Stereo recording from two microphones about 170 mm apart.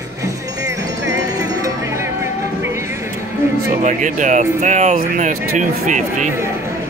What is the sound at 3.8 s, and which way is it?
Speech, 45° right (ahead or behind).